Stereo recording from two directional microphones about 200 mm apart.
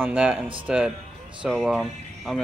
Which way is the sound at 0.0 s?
5° right (ahead or behind).